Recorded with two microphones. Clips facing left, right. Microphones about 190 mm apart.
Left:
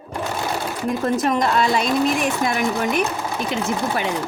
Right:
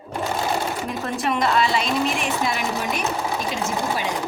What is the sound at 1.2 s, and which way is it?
Speech, 40° left (ahead or behind).